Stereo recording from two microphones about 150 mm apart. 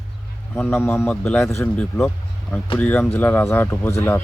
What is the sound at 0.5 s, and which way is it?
Speech, 15° left (ahead or behind).